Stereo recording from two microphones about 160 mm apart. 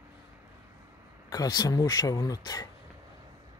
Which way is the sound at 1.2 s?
25° left (ahead or behind).